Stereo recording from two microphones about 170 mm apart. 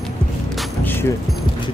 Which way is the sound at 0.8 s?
10° left (ahead or behind).